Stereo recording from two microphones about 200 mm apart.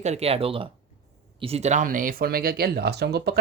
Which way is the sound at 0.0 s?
30° right (ahead or behind).